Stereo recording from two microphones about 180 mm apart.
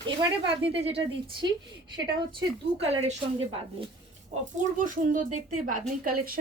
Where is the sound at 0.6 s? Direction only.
30° right (ahead or behind).